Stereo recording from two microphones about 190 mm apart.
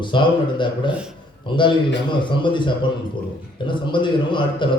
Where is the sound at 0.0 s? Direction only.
25° left (ahead or behind).